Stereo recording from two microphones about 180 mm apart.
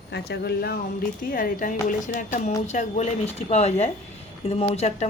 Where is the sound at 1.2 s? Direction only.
50° left (ahead or behind).